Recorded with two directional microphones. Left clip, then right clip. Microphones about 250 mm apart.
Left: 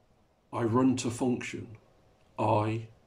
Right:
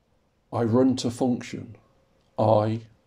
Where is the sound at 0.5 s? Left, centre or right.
Centre.